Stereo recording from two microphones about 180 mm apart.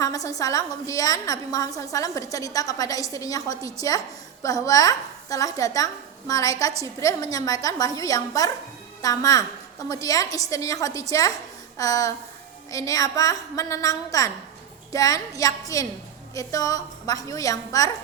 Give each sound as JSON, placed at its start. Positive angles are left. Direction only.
{"t": 0.0, "sound": "a woman's voice", "side_deg": 20}